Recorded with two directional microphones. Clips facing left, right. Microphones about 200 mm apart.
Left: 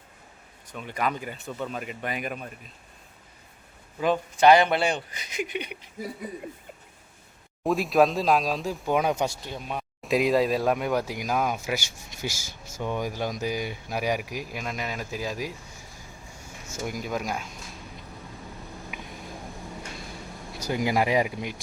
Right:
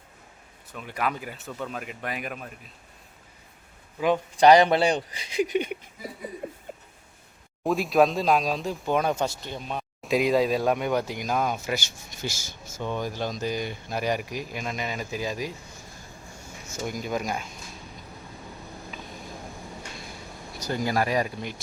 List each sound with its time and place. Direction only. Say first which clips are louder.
0.7 s speech: left 1 dB; 5° right (ahead or behind)
4.4 s speech: right 2 dB; 35° right (ahead or behind)
7.6 s speech: even; centre (ahead or behind)
16.6 s speech: right 1 dB; 5° left (ahead or behind)
18.9 s vehicle: even; 15° left (ahead or behind)
20.6 s speech: left 1 dB; 10° left (ahead or behind)